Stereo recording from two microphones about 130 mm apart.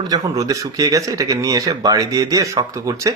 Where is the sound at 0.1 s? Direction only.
30° right (ahead or behind).